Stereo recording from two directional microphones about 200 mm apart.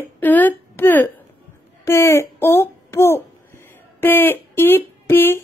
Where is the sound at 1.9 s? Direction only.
15° left (ahead or behind).